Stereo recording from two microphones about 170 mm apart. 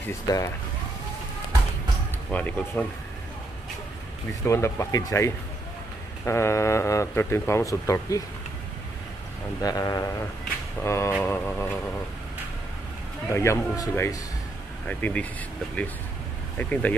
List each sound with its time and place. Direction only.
2.3 s speech: 10° left (ahead or behind)
4.3 s speech: 15° left (ahead or behind)
9.6 s speech: 20° left (ahead or behind)
13.3 s speech: 15° left (ahead or behind)
16.5 s speech: 10° left (ahead or behind)